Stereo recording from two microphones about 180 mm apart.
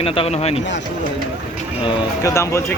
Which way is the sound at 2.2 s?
15° left (ahead or behind).